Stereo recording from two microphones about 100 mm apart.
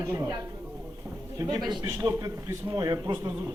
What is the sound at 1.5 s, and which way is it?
Speech, 45° right (ahead or behind).